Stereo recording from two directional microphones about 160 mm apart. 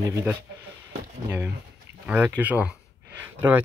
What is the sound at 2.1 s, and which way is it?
Speech, 10° right (ahead or behind).